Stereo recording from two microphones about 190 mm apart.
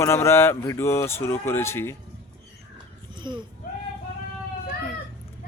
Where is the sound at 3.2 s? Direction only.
25° right (ahead or behind).